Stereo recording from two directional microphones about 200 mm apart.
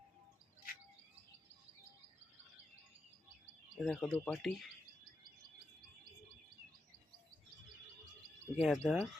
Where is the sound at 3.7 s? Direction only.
Centre (ahead or behind).